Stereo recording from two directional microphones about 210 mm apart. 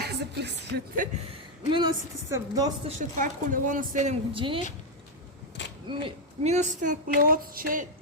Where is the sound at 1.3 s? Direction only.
25° right (ahead or behind).